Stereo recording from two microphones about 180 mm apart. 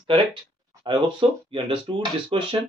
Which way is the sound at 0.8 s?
25° right (ahead or behind).